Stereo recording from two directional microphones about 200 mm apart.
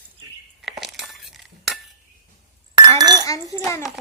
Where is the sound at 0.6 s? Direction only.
Centre (ahead or behind).